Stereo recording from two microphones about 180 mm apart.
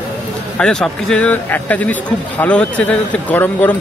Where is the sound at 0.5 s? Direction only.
5° left (ahead or behind).